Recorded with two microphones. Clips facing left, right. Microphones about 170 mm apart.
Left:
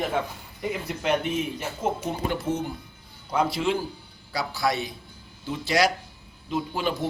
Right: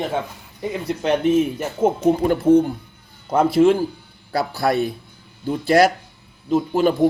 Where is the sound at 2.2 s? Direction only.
50° right (ahead or behind).